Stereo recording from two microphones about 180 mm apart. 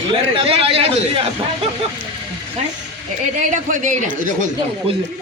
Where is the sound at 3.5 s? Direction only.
45° right (ahead or behind).